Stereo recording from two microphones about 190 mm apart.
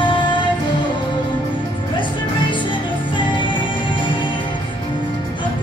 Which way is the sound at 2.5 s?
25° left (ahead or behind).